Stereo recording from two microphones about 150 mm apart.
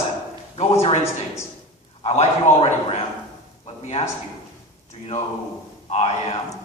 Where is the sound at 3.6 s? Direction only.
45° left (ahead or behind).